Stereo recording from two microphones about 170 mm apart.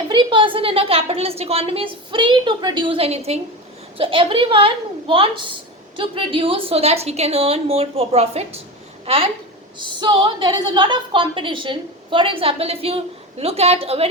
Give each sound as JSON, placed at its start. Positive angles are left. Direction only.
{"t": 0.1, "sound": "a woman's voice", "side_deg": -30}